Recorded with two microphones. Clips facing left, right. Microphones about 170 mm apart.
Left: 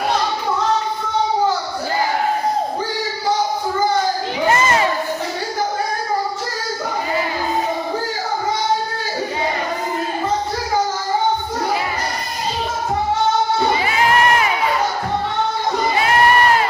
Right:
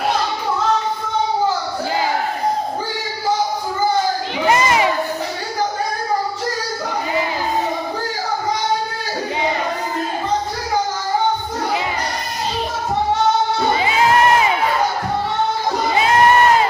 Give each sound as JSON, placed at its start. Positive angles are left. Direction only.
{"t": 4.4, "sound": "crowd", "side_deg": -15}